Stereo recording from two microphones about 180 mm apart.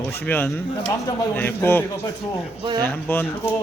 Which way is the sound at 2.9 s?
10° left (ahead or behind).